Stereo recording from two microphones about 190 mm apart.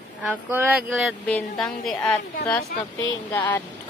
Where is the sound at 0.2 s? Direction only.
10° right (ahead or behind).